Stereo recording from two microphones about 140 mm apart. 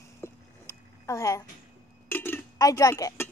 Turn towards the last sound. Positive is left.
turn(degrees=25)  # may be behind; listen again after turning